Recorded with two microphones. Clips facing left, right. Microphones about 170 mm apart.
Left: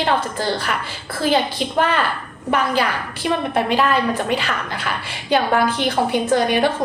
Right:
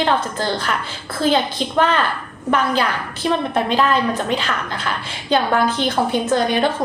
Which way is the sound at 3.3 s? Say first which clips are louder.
Even; 10° left (ahead or behind).